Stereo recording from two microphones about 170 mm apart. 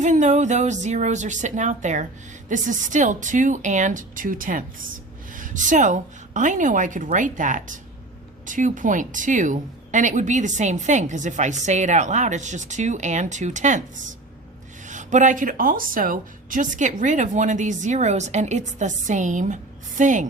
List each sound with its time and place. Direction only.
0.0 s a woman's voice: 45° right (ahead or behind)
14.8 s a woman's voice: 45° right (ahead or behind)